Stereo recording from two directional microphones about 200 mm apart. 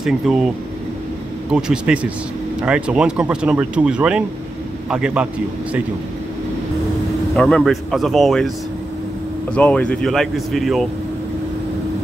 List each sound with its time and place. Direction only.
0.0 s speech: centre (ahead or behind)
1.5 s speech: 5° right (ahead or behind)
7.3 s speech: 5° left (ahead or behind)
9.5 s speech: 5° left (ahead or behind)